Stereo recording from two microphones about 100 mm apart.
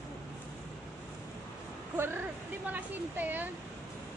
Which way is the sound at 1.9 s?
25° right (ahead or behind).